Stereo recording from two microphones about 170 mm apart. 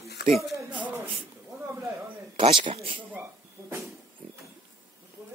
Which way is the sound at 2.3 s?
30° right (ahead or behind).